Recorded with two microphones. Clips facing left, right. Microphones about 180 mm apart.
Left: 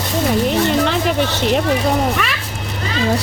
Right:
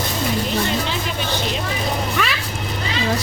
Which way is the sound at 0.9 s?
65° left (ahead or behind).